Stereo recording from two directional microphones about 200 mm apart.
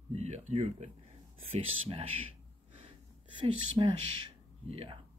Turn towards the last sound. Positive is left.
turn(degrees=-30)  # may be behind; listen again after turning